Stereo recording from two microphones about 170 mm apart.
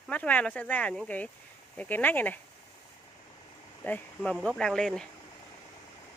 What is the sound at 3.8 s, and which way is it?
Speech, 10° left (ahead or behind).